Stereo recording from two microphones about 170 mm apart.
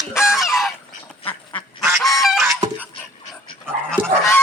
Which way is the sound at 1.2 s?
30° left (ahead or behind).